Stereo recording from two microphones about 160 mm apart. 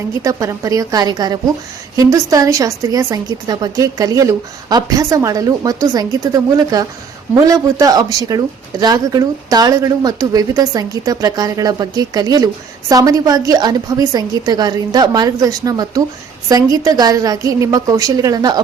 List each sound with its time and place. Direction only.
0.2 s a woman's voice: 20° right (ahead or behind)